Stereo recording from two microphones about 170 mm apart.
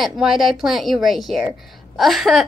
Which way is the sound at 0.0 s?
Centre (ahead or behind).